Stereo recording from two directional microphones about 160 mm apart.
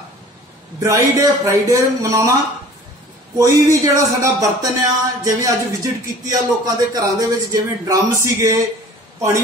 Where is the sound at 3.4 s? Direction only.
20° right (ahead or behind).